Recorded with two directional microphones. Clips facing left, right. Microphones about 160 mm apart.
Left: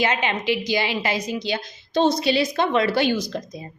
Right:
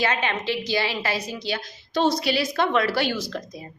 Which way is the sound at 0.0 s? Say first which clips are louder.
Left 2 dB; 20° left (ahead or behind).